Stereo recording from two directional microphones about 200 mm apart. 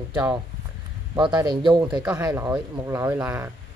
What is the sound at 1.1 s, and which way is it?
Speech, 20° right (ahead or behind).